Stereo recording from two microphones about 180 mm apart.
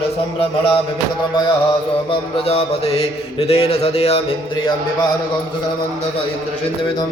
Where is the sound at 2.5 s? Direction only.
35° left (ahead or behind).